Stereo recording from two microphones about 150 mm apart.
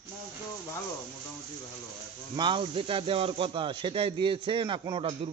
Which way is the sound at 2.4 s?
30° right (ahead or behind).